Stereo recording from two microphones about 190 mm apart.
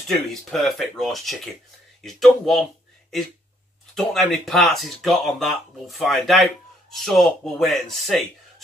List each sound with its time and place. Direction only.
0.1 s speech: centre (ahead or behind)
3.9 s speech: centre (ahead or behind)